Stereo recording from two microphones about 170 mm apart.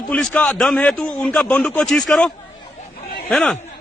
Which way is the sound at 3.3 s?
5° left (ahead or behind).